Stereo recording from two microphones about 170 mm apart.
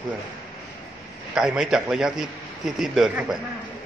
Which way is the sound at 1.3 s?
5° right (ahead or behind).